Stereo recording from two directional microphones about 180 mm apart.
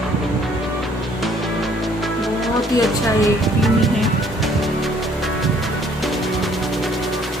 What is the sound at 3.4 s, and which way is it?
Music, centre (ahead or behind).